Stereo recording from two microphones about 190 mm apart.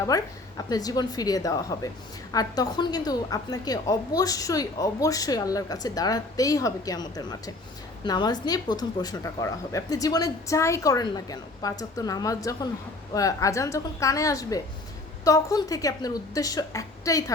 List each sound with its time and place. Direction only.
0.0 s a woman's voice: 20° left (ahead or behind)